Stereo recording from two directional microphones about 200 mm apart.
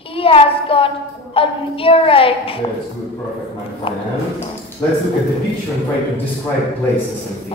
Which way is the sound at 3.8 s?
25° left (ahead or behind).